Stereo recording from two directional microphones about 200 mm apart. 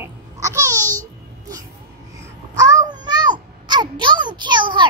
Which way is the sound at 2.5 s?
15° right (ahead or behind).